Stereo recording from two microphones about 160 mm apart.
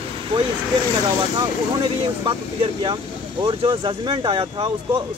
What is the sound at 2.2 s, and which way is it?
Speech, 30° right (ahead or behind).